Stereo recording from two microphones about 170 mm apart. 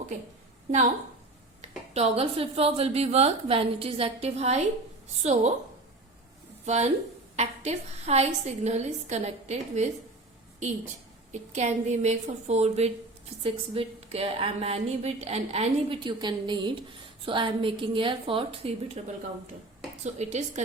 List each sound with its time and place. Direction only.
1.6 s a woman's voice: 40° right (ahead or behind)
6.7 s a woman's voice: 40° right (ahead or behind)
11.3 s a woman's voice: 45° right (ahead or behind)
20.1 s a woman's voice: 45° right (ahead or behind)